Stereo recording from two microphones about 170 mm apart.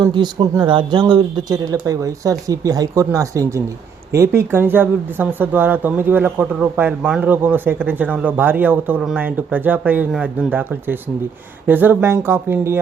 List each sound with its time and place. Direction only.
0.0 s speech: 25° right (ahead or behind)